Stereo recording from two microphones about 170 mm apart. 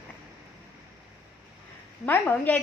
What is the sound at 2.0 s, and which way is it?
Speech, 10° left (ahead or behind).